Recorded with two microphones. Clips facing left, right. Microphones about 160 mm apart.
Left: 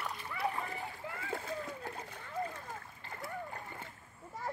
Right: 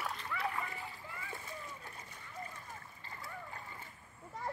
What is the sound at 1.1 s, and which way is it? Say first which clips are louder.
Splash: left 7 dB; 70° left (ahead or behind).